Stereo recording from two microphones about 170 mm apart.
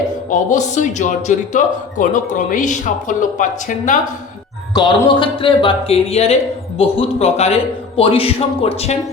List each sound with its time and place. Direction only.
0.3 s speech: 45° left (ahead or behind)
4.7 s speech: 25° left (ahead or behind)